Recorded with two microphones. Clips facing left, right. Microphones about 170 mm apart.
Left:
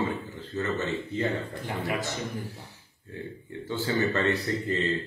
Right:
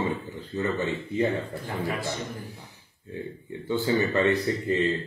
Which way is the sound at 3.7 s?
15° right (ahead or behind).